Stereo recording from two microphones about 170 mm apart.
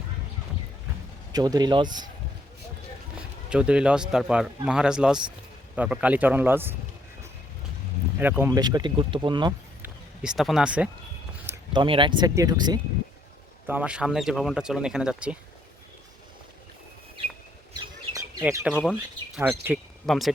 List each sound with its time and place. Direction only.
1.3 s speech: 25° right (ahead or behind)
3.2 s a man's voice: 5° right (ahead or behind)
8.2 s a man's voice: 10° right (ahead or behind)
8.4 s speech: 25° right (ahead or behind)
9.8 s a sound: 5° right (ahead or behind)
11.7 s speech: 30° right (ahead or behind)
13.7 s speech: 10° right (ahead or behind)
17.7 s bird: 20° right (ahead or behind)
18.6 s a man's voice: 5° right (ahead or behind)